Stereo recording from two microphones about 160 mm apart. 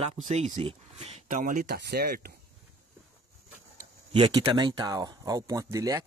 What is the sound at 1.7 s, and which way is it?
Speech, 90° right.